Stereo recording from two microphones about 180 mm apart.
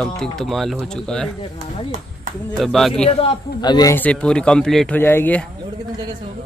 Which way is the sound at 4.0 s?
5° left (ahead or behind).